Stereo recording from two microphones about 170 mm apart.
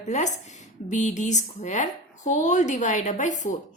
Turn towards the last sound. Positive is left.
turn(degrees=45)  # may be behind; listen again after turning